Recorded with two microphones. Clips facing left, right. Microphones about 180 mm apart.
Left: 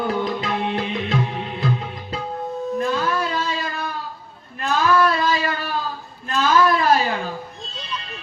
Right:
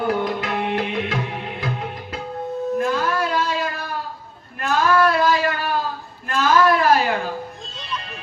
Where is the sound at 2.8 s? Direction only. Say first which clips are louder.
Left 1 dB; 55° right (ahead or behind).